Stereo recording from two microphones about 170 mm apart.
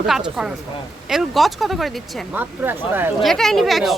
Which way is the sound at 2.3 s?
10° right (ahead or behind).